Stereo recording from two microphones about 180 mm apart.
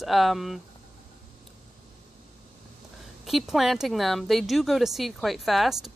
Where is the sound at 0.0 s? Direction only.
Centre (ahead or behind).